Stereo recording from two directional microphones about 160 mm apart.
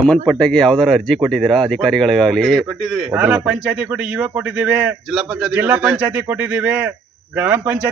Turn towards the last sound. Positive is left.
turn(degrees=-10)  # may be behind; listen again after turning